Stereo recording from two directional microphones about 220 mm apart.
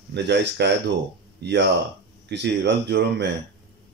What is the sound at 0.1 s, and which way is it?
Speech, 50° right (ahead or behind).